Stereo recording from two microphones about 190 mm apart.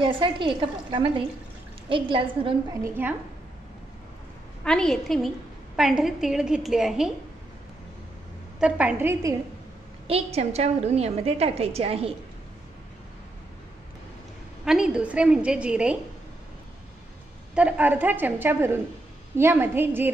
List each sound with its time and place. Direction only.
0.0 s a woman's voice: 25° right (ahead or behind)
2.7 s a woman's voice: 10° right (ahead or behind)
4.6 s a woman's voice: 5° left (ahead or behind)
8.5 s a woman's voice: 5° right (ahead or behind)
10.0 s a woman's voice: 30° right (ahead or behind)
14.6 s a woman's voice: 5° right (ahead or behind)
17.6 s a woman's voice: 5° right (ahead or behind)